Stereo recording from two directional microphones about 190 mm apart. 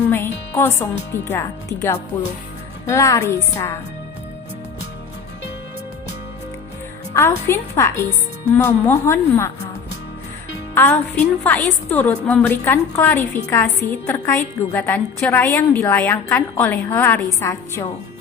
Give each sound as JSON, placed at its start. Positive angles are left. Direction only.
{"t": 0.1, "sound": "music", "side_deg": 10}
{"t": 1.1, "sound": "a woman's voice", "side_deg": 15}
{"t": 7.1, "sound": "a woman's voice", "side_deg": 15}
{"t": 10.8, "sound": "a woman's voice", "side_deg": 10}